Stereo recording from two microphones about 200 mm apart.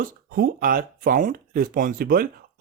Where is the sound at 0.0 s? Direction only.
45° right (ahead or behind).